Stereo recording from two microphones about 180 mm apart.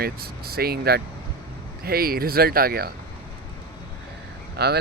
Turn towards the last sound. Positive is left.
turn(degrees=-65)  # may be behind; listen again after turning